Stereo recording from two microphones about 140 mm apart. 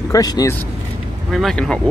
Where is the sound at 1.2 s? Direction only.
Centre (ahead or behind).